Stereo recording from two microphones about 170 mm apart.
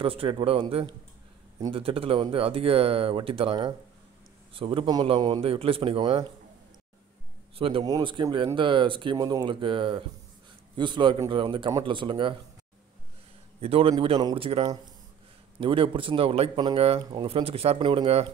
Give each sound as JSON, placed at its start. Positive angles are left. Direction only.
{"t": 0.0, "sound": "speech", "side_deg": -35}
{"t": 7.5, "sound": "speech", "side_deg": -35}
{"t": 13.6, "sound": "speech", "side_deg": -35}